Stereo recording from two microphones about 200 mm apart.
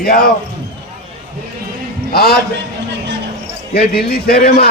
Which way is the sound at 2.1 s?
50° left (ahead or behind).